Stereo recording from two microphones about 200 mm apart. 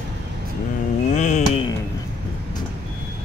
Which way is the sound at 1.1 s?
35° left (ahead or behind).